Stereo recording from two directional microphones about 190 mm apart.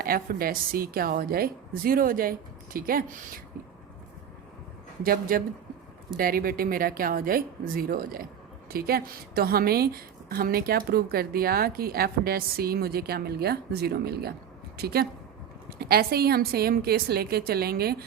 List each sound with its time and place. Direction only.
0.0 s a woman's voice: 50° right (ahead or behind)
5.0 s a woman's voice: 50° right (ahead or behind)